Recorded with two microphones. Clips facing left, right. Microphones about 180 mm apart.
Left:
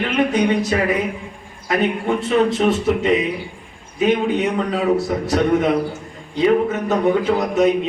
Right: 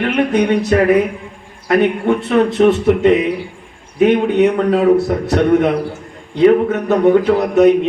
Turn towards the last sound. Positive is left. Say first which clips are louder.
# right 6 dB
turn(degrees=-60)  # may be behind; listen again after turning